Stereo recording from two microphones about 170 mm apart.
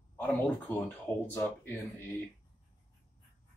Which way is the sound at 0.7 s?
10° left (ahead or behind).